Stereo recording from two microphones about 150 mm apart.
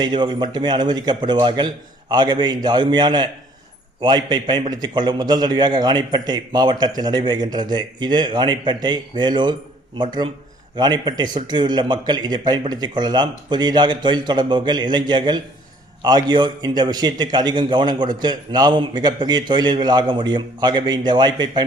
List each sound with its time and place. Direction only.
0.0 s a man's voice: 30° right (ahead or behind)
10.8 s a man's voice: 25° right (ahead or behind)